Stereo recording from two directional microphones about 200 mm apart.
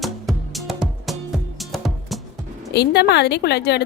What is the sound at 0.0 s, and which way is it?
Music, centre (ahead or behind).